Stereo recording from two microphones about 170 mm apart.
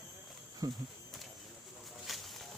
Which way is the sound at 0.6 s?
20° right (ahead or behind).